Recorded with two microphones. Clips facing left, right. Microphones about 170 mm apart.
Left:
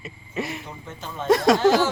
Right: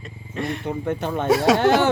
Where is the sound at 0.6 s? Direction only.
65° right (ahead or behind).